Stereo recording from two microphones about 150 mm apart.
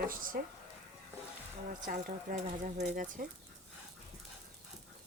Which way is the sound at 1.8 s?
60° right (ahead or behind).